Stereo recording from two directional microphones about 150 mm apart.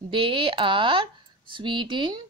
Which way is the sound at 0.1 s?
35° right (ahead or behind).